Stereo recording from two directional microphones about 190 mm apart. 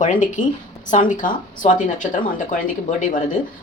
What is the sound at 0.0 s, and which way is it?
Speech, 40° left (ahead or behind).